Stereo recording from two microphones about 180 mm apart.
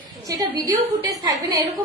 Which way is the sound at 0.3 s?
20° right (ahead or behind).